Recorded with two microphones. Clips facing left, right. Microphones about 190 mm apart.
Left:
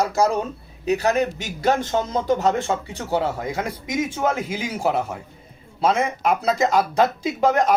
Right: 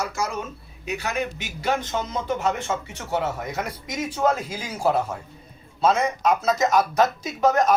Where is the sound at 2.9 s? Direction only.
30° left (ahead or behind).